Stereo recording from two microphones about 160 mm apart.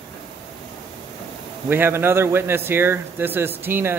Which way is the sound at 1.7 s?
15° right (ahead or behind).